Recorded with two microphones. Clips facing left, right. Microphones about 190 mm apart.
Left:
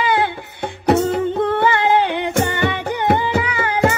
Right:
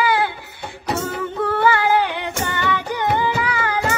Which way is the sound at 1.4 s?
20° left (ahead or behind).